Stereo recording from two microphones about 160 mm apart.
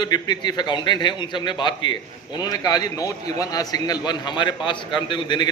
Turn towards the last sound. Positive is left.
turn(degrees=30)  # may be behind; listen again after turning